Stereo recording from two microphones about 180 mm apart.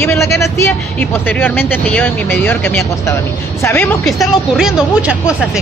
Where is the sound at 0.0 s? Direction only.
15° left (ahead or behind); by 5.1 s 5° right (ahead or behind).